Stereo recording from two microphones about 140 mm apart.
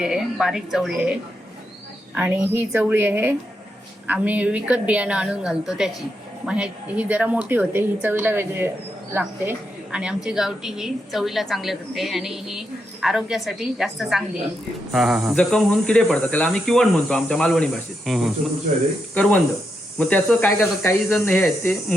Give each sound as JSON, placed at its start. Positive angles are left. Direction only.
{"t": 0.0, "sound": "a woman's voice", "side_deg": -5}
{"t": 20.6, "sound": "speech", "side_deg": 15}